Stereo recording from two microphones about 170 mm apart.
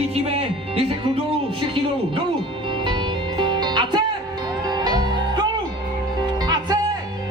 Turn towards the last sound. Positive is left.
turn(degrees=-25)  # may be behind; listen again after turning